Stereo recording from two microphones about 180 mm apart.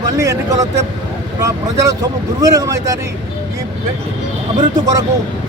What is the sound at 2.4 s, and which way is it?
Speech, 20° right (ahead or behind).